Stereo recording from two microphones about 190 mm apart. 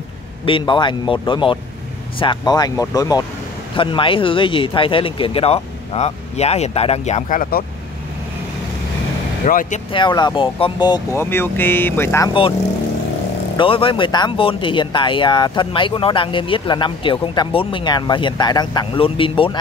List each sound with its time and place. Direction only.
0.5 s speech: 25° left (ahead or behind); by 7.6 s 45° left (ahead or behind)
9.5 s speech: 45° left (ahead or behind)
9.9 s speech: 25° left (ahead or behind)
11.2 s speech: 10° left (ahead or behind)
13.6 s speech: 25° left (ahead or behind)